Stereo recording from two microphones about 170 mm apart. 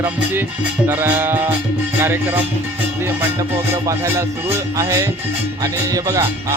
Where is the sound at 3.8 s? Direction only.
15° right (ahead or behind).